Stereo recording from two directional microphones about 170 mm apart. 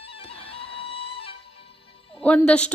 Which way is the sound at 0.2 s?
35° left (ahead or behind).